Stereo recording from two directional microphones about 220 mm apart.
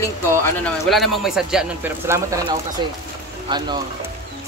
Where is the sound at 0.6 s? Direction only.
Centre (ahead or behind); by 3.8 s 20° right (ahead or behind).